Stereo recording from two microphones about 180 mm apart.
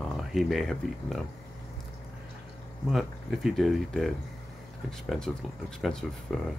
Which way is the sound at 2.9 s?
Centre (ahead or behind).